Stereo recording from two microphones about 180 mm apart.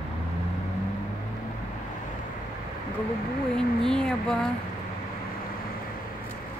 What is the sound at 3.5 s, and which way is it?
Speech, 5° left (ahead or behind).